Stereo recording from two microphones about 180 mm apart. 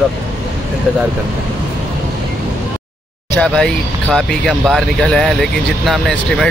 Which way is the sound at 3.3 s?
5° left (ahead or behind).